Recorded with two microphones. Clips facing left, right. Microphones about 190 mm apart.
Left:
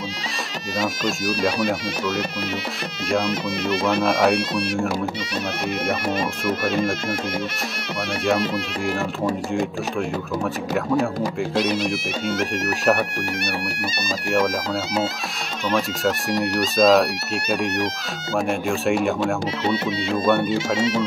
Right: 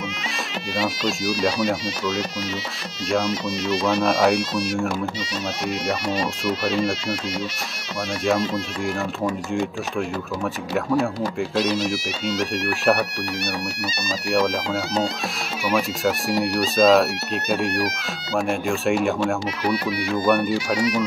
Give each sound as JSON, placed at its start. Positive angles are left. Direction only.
{"t": 0.7, "sound": "speech", "side_deg": 50}
{"t": 3.3, "sound": "speech", "side_deg": 55}
{"t": 4.0, "sound": "speech", "side_deg": 0}
{"t": 4.4, "sound": "speech", "side_deg": 60}
{"t": 5.9, "sound": "speech", "side_deg": 55}
{"t": 9.5, "sound": "speech", "side_deg": 0}
{"t": 11.5, "sound": "speech", "side_deg": 60}
{"t": 12.5, "sound": "speech", "side_deg": 0}
{"t": 14.3, "sound": "speech", "side_deg": 5}
{"t": 19.6, "sound": "speech", "side_deg": 25}